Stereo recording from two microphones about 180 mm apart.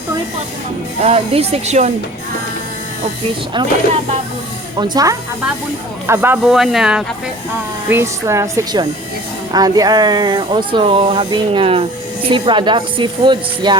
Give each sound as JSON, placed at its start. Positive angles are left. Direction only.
{"t": 1.0, "sound": "speech", "side_deg": -35}
{"t": 4.8, "sound": "speech", "side_deg": -20}
{"t": 7.9, "sound": "speech", "side_deg": -15}